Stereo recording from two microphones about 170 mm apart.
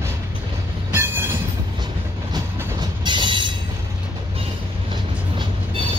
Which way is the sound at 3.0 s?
30° right (ahead or behind).